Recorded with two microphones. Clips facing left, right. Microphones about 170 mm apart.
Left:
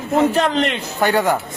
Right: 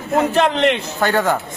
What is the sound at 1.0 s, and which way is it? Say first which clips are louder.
Speech: left 1 dB; 15° left (ahead or behind).